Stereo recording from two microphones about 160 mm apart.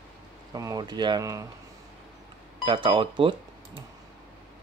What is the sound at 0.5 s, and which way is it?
Speech, 20° right (ahead or behind).